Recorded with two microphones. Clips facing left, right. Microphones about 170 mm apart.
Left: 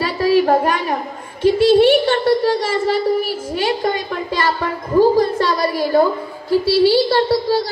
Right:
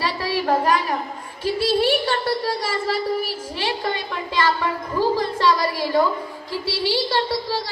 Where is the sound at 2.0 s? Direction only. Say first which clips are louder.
Left 8 dB; 45° left (ahead or behind).